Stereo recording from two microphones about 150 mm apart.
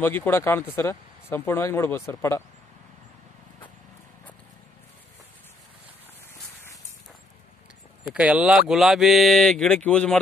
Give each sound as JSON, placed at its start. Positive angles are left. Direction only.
{"t": 0.0, "sound": "speech", "side_deg": 15}
{"t": 8.0, "sound": "speech", "side_deg": -5}